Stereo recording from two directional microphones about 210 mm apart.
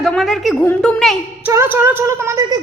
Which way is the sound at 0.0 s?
Centre (ahead or behind).